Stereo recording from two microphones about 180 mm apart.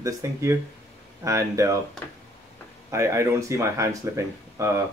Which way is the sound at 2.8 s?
15° right (ahead or behind).